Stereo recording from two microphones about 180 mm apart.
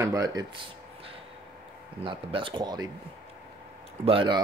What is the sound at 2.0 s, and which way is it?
Speech, 30° right (ahead or behind).